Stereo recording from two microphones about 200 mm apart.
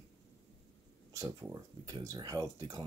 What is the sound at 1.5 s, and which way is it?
Speech, 20° right (ahead or behind).